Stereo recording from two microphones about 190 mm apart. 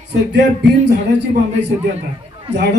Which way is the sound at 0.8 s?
65° right (ahead or behind).